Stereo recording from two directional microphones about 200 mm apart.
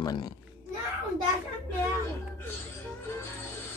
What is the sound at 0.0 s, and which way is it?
Speech, 20° left (ahead or behind).